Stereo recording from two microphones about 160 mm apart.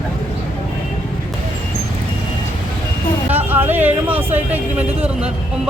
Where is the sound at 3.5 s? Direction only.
10° right (ahead or behind).